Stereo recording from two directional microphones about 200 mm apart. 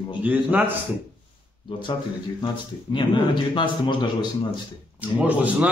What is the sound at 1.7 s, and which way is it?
A man's voice, 25° left (ahead or behind).